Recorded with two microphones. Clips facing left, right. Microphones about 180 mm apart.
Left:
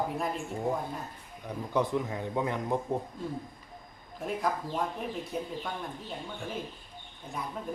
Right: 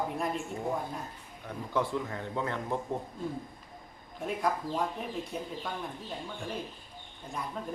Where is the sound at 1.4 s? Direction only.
20° left (ahead or behind).